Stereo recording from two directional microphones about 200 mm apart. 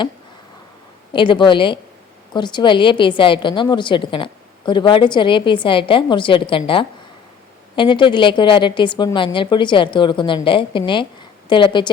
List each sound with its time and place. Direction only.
1.1 s a woman's voice: 25° left (ahead or behind)
7.8 s a woman's voice: 25° left (ahead or behind)